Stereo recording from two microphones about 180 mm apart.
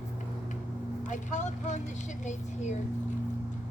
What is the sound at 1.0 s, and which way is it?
Speech, 45° left (ahead or behind).